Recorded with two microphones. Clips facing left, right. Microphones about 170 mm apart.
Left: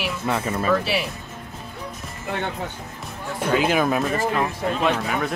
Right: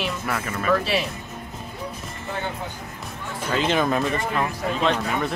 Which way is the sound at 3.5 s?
5° left (ahead or behind).